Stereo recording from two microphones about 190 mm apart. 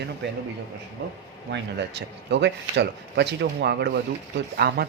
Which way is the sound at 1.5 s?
65° right (ahead or behind).